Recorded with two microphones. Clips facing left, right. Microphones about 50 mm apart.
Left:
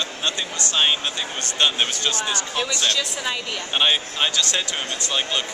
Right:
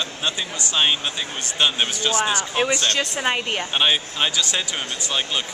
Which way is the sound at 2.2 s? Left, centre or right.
Centre.